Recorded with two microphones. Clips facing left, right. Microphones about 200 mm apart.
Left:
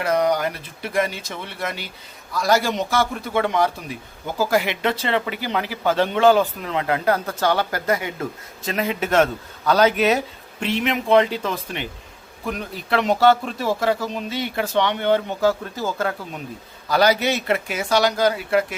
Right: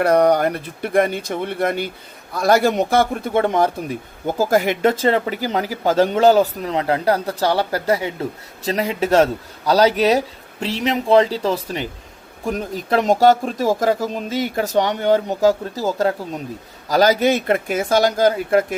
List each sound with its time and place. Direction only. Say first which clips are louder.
0.0 s a man's voice: right 5 dB; 60° right (ahead or behind)